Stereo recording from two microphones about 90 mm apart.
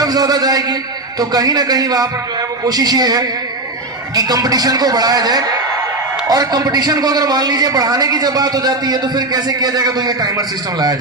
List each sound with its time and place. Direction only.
0.0 s a man's voice: 45° right (ahead or behind)